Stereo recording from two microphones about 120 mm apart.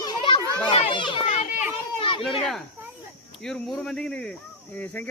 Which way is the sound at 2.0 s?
45° left (ahead or behind).